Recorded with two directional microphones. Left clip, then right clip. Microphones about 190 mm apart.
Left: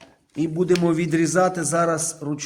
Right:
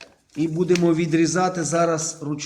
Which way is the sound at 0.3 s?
50° left (ahead or behind).